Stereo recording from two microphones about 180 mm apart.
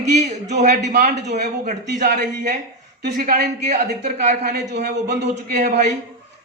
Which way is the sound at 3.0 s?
60° right (ahead or behind).